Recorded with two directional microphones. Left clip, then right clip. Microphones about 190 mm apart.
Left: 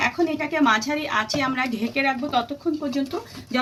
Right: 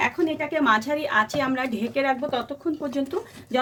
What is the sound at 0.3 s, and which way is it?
A woman's voice, 65° right (ahead or behind).